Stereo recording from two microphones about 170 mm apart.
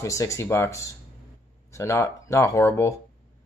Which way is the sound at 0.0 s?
20° left (ahead or behind).